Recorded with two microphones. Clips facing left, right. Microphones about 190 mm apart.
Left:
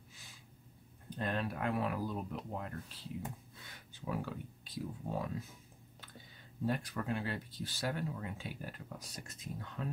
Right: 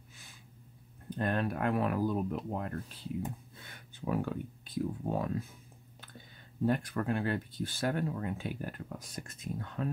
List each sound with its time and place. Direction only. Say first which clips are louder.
1.1 s speech: right 5 dB; 55° right (ahead or behind)
4.1 s speech: right 6 dB; 55° right (ahead or behind)
6.6 s speech: right 6 dB; 55° right (ahead or behind)